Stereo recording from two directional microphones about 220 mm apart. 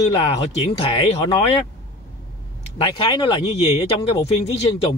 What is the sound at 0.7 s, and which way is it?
Speech, 25° left (ahead or behind).